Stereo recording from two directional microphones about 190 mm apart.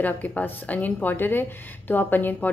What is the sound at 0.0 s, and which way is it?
A woman's voice, 10° left (ahead or behind).